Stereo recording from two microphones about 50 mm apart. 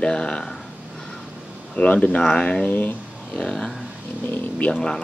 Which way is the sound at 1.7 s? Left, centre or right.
Left.